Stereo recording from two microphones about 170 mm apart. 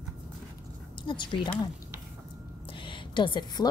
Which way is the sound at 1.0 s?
25° left (ahead or behind).